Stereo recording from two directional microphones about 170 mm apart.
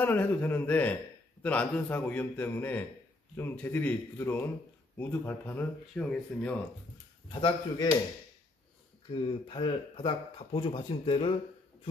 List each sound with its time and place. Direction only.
0.0 s speech: 10° left (ahead or behind)
7.3 s speech: 30° left (ahead or behind)
9.1 s speech: 30° left (ahead or behind)